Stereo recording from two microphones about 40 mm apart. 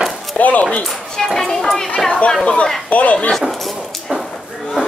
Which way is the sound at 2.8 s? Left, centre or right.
Left.